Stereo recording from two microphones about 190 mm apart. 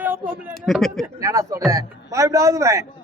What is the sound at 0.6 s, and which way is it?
Speech, centre (ahead or behind).